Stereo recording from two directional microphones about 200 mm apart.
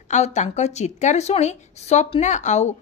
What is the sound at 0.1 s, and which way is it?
A woman's voice, 35° left (ahead or behind).